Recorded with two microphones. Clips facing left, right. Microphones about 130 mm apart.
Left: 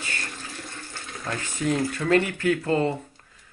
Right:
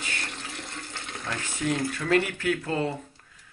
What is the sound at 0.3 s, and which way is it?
Water, 20° right (ahead or behind).